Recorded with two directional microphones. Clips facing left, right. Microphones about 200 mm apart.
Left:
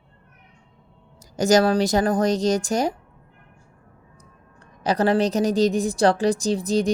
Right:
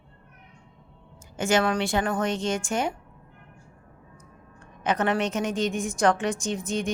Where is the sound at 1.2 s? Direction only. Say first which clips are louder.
Left 6 dB; 40° left (ahead or behind).